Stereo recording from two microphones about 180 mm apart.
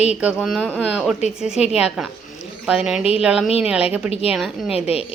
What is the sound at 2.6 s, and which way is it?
Speech, 5° right (ahead or behind).